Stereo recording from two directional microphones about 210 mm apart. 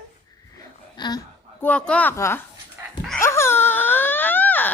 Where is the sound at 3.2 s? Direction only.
10° left (ahead or behind).